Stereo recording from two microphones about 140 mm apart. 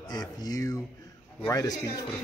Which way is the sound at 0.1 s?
25° left (ahead or behind).